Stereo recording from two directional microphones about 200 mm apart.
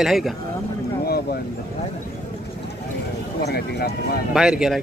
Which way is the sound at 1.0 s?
50° left (ahead or behind).